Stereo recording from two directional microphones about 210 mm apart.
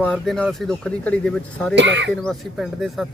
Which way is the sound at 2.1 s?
Centre (ahead or behind).